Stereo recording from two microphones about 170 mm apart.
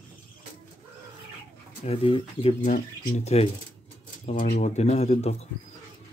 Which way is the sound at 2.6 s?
45° left (ahead or behind).